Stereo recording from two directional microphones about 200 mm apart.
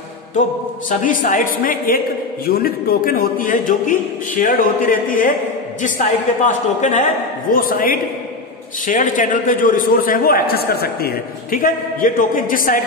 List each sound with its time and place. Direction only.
0.8 s a man's voice: 40° left (ahead or behind)